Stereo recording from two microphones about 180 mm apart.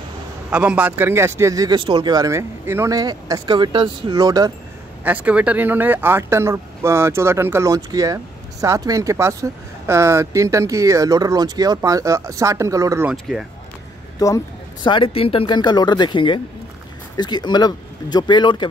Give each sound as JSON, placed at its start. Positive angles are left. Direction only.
{"t": 0.5, "sound": "speech", "side_deg": -5}
{"t": 5.0, "sound": "speech", "side_deg": -10}
{"t": 13.1, "sound": "speech", "side_deg": 0}
{"t": 14.2, "sound": "speech", "side_deg": 20}